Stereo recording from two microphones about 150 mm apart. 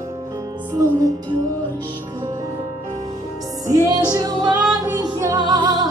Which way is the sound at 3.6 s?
25° right (ahead or behind).